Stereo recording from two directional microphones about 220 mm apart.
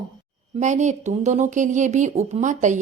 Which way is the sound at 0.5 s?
35° right (ahead or behind).